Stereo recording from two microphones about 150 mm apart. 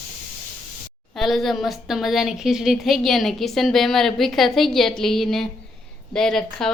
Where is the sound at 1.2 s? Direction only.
Centre (ahead or behind).